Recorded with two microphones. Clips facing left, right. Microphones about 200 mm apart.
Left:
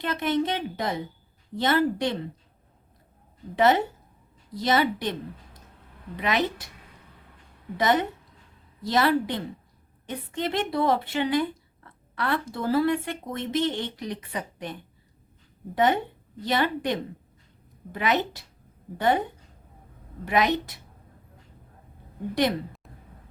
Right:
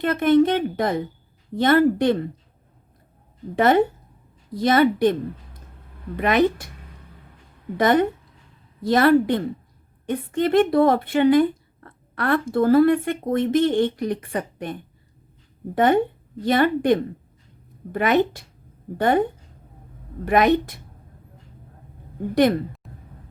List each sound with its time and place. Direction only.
0.0 s a woman's voice: 55° right (ahead or behind)
3.5 s a woman's voice: 50° right (ahead or behind)
6.1 s a woman's voice: 50° right (ahead or behind)
7.8 s a woman's voice: 50° right (ahead or behind)
20.2 s a woman's voice: 50° right (ahead or behind)